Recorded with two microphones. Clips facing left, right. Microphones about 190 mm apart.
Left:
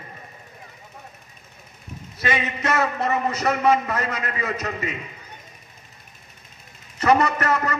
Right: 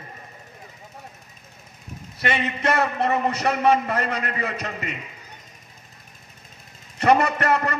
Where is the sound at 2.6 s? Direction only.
30° right (ahead or behind).